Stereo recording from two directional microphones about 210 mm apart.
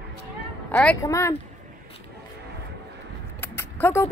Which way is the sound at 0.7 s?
10° left (ahead or behind).